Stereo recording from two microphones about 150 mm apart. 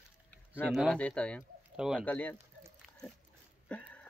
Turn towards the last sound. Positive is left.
turn(degrees=10)  # may be behind; listen again after turning